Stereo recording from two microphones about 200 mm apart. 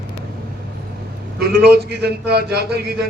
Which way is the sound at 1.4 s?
55° right (ahead or behind).